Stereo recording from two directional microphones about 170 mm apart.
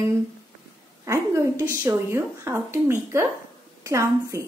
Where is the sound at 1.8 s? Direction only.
15° right (ahead or behind).